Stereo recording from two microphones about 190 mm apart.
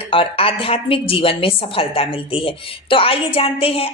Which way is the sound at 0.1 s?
30° left (ahead or behind).